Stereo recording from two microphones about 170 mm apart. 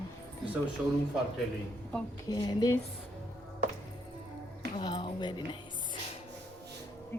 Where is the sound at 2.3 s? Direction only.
20° left (ahead or behind).